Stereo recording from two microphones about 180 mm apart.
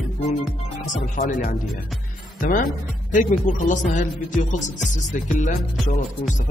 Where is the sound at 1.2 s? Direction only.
45° left (ahead or behind).